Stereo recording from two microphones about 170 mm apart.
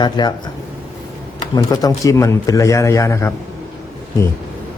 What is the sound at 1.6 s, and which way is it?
A man's voice, 20° left (ahead or behind).